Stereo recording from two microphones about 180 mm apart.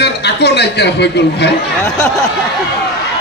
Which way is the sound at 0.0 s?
70° left (ahead or behind).